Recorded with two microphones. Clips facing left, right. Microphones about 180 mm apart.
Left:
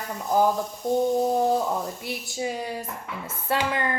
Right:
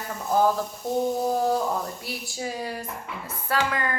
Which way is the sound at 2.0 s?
20° left (ahead or behind).